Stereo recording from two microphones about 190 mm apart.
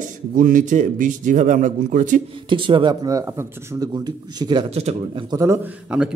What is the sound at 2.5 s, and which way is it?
Speech, 25° right (ahead or behind).